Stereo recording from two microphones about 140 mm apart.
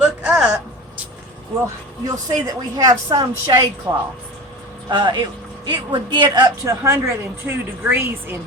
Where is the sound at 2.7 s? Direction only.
25° right (ahead or behind).